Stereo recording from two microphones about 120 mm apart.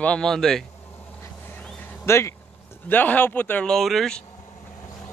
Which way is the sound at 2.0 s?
20° left (ahead or behind).